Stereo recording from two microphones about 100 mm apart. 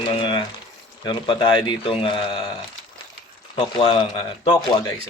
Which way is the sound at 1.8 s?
65° left (ahead or behind).